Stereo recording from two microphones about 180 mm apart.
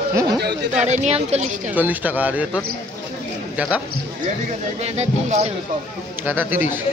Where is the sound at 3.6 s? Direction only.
10° right (ahead or behind).